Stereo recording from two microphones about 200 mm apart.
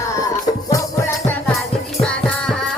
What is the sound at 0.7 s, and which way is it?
Music, 10° left (ahead or behind).